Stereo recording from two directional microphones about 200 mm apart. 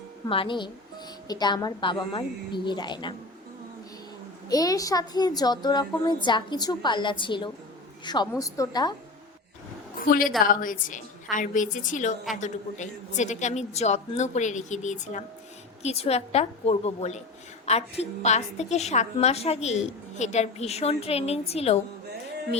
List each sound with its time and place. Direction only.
0.3 s a woman's voice: 25° left (ahead or behind)
4.4 s a woman's voice: 20° left (ahead or behind)
10.0 s a woman's voice: 45° left (ahead or behind)